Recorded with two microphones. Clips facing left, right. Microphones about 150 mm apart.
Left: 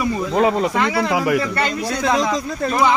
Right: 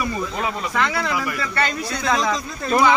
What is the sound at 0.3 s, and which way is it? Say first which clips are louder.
Speech: left 9 dB; 70° left (ahead or behind).